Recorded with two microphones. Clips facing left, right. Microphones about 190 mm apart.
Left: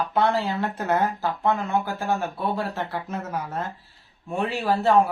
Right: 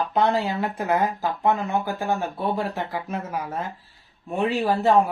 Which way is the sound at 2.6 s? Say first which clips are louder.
Right 1 dB; 15° right (ahead or behind).